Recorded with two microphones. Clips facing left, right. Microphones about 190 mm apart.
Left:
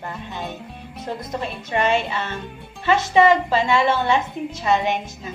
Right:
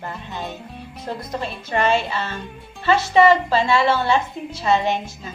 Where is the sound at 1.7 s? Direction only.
20° left (ahead or behind).